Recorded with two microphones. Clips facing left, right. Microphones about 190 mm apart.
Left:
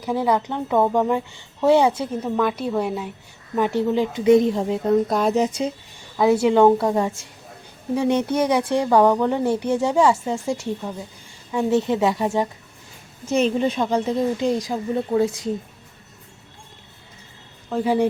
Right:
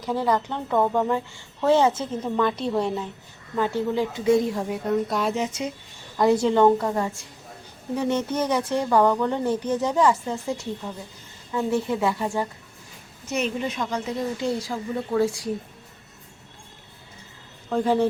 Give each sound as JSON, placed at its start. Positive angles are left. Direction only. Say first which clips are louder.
{"t": 0.0, "sound": "speech", "louder": "left 3 dB", "side_deg": 10}
{"t": 5.0, "sound": "a woman's voice", "louder": "left 5 dB", "side_deg": 40}
{"t": 6.1, "sound": "speech", "louder": "left 3 dB", "side_deg": 5}
{"t": 13.2, "sound": "a woman's voice", "louder": "left 7 dB", "side_deg": 30}
{"t": 14.4, "sound": "speech", "louder": "left 5 dB", "side_deg": 15}
{"t": 17.7, "sound": "speech", "louder": "left 1 dB", "side_deg": 5}